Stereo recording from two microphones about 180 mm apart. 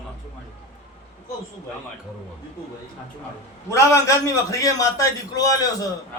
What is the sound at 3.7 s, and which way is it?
A man's voice, 15° left (ahead or behind).